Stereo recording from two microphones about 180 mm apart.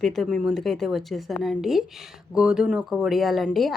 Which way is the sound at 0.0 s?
Centre (ahead or behind).